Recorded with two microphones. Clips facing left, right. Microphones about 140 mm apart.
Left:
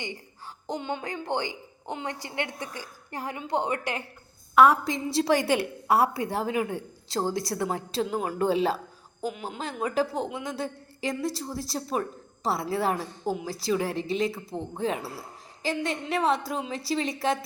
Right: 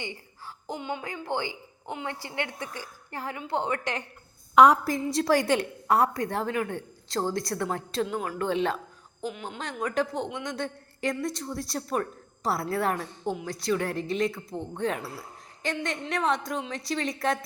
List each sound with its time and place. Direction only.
0.0 s speech: 20° left (ahead or behind)
4.5 s a woman's voice: 15° right (ahead or behind)
5.1 s a woman's voice: centre (ahead or behind)